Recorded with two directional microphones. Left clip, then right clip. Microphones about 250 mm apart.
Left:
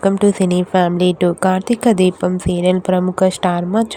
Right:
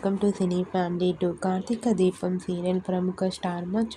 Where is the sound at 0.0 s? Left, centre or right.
Left.